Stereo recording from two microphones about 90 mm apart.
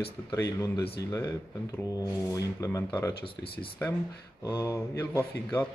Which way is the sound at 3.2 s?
80° left.